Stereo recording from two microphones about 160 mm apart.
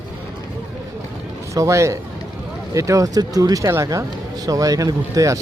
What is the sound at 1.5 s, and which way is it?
Speech, 20° right (ahead or behind).